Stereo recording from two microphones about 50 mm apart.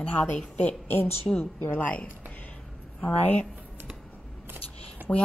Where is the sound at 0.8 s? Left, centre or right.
Left.